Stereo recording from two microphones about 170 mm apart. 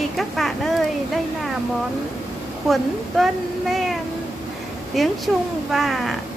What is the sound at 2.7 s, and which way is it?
Speech, centre (ahead or behind).